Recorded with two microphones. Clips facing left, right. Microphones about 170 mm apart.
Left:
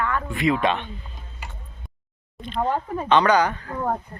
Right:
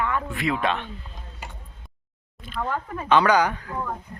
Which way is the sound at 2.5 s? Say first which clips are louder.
Left 4 dB; 35° left (ahead or behind).